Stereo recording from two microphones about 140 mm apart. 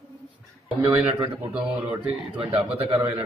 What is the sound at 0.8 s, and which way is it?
Speech, 10° right (ahead or behind).